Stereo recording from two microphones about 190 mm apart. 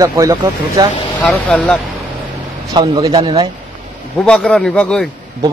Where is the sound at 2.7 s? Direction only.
25° right (ahead or behind).